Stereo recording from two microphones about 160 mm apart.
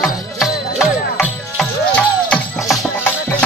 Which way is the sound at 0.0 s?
Centre (ahead or behind).